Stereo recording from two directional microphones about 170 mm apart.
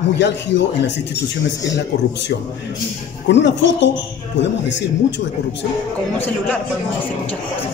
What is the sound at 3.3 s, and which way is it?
Speech, 90° left.